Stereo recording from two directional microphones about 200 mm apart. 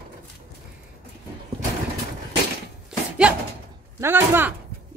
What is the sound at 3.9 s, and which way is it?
Speech, 10° right (ahead or behind).